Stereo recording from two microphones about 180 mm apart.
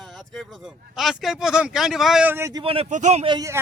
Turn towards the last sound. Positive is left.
turn(degrees=-25)  # may be behind; listen again after turning